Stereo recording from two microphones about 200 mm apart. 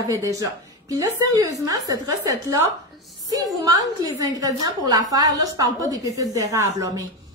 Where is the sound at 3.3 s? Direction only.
20° right (ahead or behind).